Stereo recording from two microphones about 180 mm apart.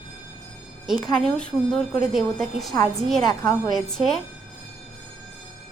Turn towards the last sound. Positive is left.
turn(degrees=0)  # may be behind; listen again after turning